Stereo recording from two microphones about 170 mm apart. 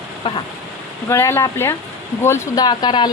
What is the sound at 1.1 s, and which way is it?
A woman's voice, 15° left (ahead or behind).